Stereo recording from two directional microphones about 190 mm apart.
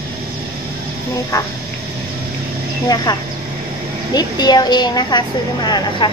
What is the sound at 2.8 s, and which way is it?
A woman's voice, 20° left (ahead or behind).